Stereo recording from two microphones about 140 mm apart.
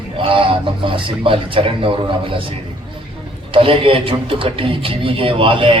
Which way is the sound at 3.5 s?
40° right (ahead or behind).